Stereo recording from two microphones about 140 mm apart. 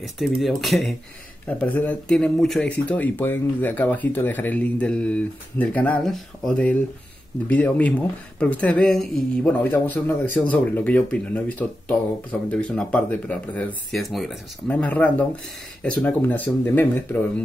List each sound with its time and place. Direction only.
0.0 s speech: centre (ahead or behind)
1.5 s speech: 10° left (ahead or behind)
9.5 s speech: 10° left (ahead or behind)